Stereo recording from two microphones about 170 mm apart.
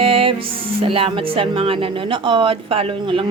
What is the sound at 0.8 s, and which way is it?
Speech, 35° right (ahead or behind).